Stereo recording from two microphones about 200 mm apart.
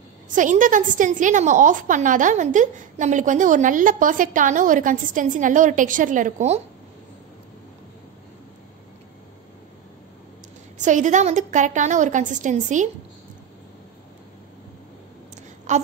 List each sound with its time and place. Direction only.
0.3 s a woman's voice: 40° right (ahead or behind)
10.8 s a woman's voice: 40° right (ahead or behind)
15.7 s a woman's voice: 35° right (ahead or behind)